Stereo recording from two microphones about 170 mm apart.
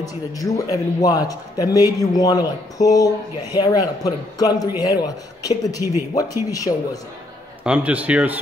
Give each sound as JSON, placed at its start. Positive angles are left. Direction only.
{"t": 0.0, "sound": "a man's voice", "side_deg": 20}
{"t": 7.6, "sound": "a man's voice", "side_deg": -5}